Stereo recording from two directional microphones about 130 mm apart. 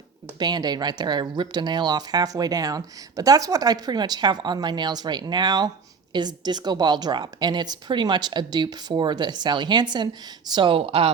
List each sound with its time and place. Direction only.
0.3 s speech: 30° right (ahead or behind)